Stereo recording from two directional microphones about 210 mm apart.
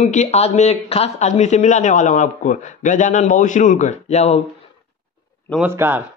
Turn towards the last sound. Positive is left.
turn(degrees=-10)  # may be behind; listen again after turning